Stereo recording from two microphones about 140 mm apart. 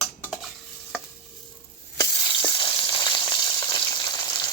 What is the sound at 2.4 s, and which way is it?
Frying, 35° left (ahead or behind).